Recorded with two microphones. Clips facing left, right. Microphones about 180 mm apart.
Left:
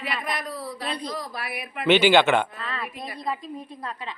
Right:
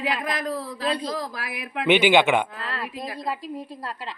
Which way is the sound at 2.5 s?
90° right.